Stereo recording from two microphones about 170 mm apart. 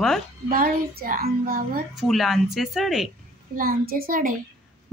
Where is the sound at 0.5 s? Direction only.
60° right (ahead or behind).